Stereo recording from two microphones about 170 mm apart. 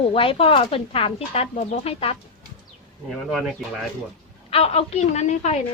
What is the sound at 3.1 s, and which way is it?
Speech, centre (ahead or behind).